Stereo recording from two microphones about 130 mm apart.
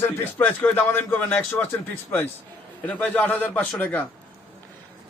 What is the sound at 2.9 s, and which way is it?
A man's voice, 10° left (ahead or behind).